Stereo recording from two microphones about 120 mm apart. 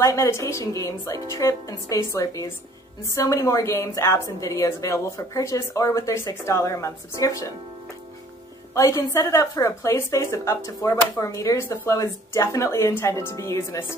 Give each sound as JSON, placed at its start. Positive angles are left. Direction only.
{"t": 0.0, "sound": "a woman's voice", "side_deg": 25}
{"t": 8.7, "sound": "a woman's voice", "side_deg": 25}